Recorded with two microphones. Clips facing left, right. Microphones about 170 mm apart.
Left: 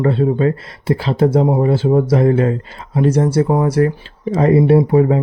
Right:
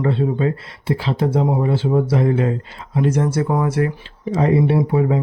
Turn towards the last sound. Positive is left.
turn(degrees=45)  # may be behind; listen again after turning